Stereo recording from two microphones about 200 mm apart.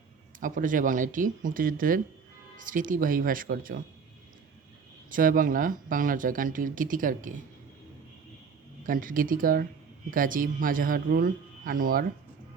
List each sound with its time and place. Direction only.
0.3 s speech: 40° right (ahead or behind)
5.1 s speech: 45° right (ahead or behind)
8.9 s speech: 45° right (ahead or behind)